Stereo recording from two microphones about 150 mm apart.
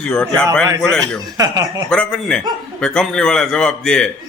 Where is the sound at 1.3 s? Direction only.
25° right (ahead or behind).